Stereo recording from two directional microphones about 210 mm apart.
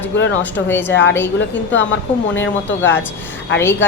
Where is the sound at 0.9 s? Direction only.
60° left (ahead or behind).